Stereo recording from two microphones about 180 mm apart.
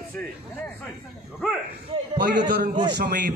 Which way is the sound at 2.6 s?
60° right (ahead or behind).